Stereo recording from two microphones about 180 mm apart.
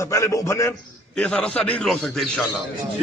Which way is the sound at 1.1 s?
5° left (ahead or behind).